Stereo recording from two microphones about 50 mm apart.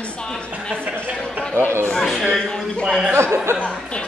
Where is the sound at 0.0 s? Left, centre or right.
Left.